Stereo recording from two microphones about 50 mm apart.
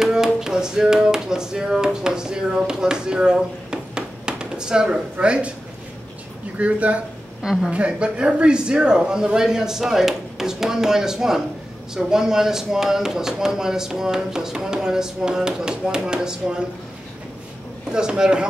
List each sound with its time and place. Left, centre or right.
0.0 s music: centre
3.7 s a sound: centre
5.1 s speech: right
6.6 s speech: right
7.4 s speech: centre
7.7 s speech: right
17.9 s speech: centre